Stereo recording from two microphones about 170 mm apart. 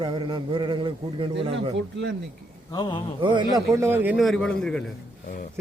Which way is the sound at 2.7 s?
25° left (ahead or behind).